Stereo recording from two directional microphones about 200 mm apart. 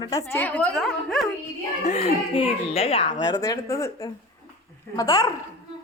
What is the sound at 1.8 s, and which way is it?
A woman's voice, 30° left (ahead or behind).